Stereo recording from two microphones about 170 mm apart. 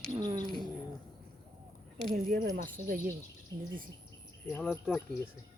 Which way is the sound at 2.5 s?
55° right (ahead or behind).